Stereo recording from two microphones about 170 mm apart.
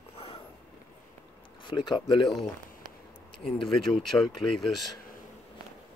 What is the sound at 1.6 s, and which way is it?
Speech, 25° left (ahead or behind).